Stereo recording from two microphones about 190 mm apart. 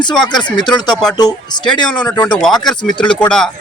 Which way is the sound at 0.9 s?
5° left (ahead or behind).